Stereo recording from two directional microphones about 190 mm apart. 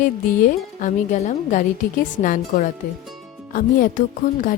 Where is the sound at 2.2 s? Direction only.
45° left (ahead or behind).